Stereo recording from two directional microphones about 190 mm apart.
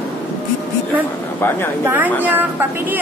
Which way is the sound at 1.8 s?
10° right (ahead or behind).